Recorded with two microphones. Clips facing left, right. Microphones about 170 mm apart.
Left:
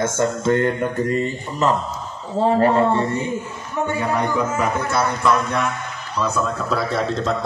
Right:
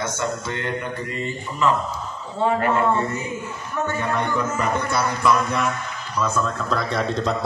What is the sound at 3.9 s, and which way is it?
A man's voice, 10° left (ahead or behind).